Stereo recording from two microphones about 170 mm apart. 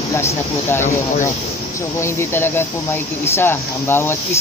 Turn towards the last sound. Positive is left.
turn(degrees=15)  # may be behind; listen again after turning